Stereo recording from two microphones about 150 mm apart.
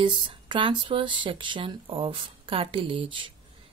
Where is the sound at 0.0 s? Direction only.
35° right (ahead or behind).